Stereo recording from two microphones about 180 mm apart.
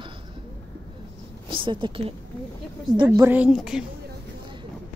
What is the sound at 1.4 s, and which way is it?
A woman's voice, 25° right (ahead or behind).